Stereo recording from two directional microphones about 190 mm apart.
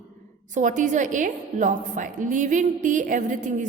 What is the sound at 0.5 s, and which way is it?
A woman's voice, 40° right (ahead or behind).